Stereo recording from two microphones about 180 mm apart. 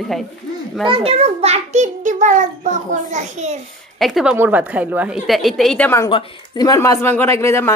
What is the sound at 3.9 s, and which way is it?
A woman's voice, centre (ahead or behind).